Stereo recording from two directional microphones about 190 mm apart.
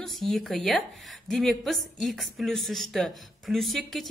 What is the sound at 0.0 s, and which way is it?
A woman's voice, centre (ahead or behind).